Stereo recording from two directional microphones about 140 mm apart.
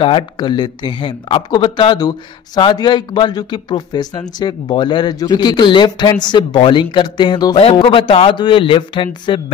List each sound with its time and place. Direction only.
0.0 s speech: 35° left (ahead or behind)